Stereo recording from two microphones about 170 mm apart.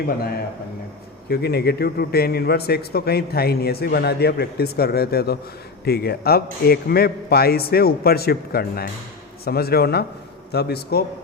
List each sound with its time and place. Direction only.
1.3 s a man's voice: 70° left (ahead or behind)